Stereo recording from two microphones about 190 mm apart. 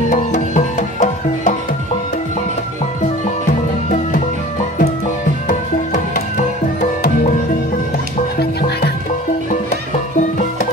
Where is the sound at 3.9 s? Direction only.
40° left (ahead or behind).